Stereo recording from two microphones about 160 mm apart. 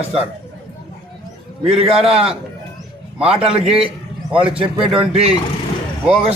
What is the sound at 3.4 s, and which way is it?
A man's voice, 35° right (ahead or behind).